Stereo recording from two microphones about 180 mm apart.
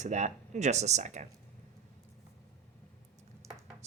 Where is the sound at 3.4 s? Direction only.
15° right (ahead or behind).